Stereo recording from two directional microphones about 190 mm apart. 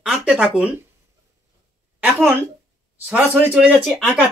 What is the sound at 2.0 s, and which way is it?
Speech, 10° right (ahead or behind).